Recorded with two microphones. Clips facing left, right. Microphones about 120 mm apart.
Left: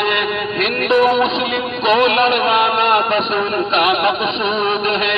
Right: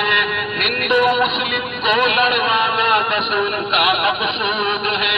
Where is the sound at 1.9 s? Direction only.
35° left (ahead or behind).